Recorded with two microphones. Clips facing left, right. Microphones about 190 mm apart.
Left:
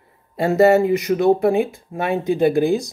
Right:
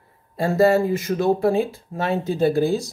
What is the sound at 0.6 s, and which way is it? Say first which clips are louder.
Speech: left 3 dB; 20° left (ahead or behind).